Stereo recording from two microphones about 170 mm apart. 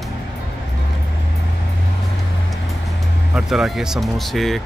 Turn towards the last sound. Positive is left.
turn(degrees=0)  # may be behind; listen again after turning